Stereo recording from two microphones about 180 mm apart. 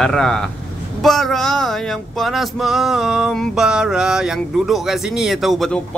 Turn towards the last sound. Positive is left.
turn(degrees=0)  # may be behind; listen again after turning